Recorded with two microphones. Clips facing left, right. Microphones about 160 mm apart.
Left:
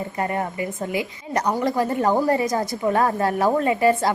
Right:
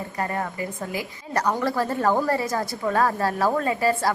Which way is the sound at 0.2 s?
20° left (ahead or behind).